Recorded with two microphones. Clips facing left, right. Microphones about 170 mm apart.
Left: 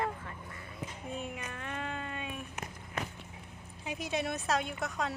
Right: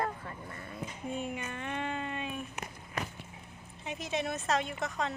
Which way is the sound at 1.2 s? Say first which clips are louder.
Right 3 dB; centre (ahead or behind).